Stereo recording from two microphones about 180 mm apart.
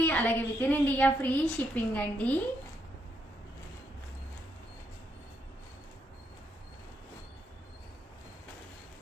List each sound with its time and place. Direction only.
0.0 s a woman's voice: 10° left (ahead or behind)